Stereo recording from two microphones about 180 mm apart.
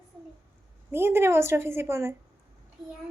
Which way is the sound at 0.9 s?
15° right (ahead or behind).